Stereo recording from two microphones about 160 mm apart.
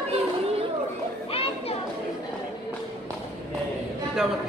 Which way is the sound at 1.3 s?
35° left (ahead or behind).